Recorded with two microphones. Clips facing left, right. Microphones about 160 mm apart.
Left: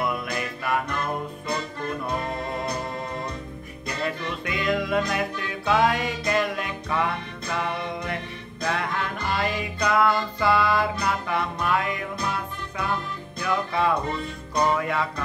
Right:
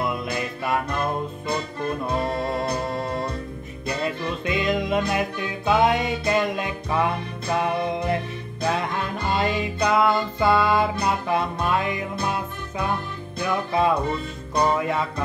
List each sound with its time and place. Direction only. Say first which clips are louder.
0.0 s music: right 1 dB; 25° right (ahead or behind)
2.0 s music: right 5 dB; 30° right (ahead or behind)
3.8 s music: right 3 dB; 25° right (ahead or behind)